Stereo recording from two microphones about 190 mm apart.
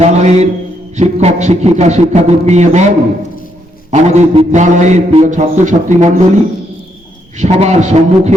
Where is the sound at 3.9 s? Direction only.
40° right (ahead or behind).